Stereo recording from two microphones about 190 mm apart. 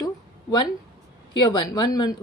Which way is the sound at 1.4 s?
20° left (ahead or behind).